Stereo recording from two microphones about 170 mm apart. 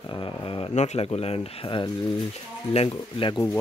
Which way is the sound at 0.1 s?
30° left (ahead or behind).